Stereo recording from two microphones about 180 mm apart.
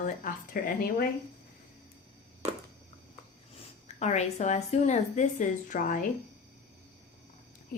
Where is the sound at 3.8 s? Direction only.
40° left (ahead or behind).